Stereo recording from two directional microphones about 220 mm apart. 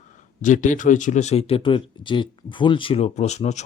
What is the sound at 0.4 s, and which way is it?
Speech, 35° left (ahead or behind).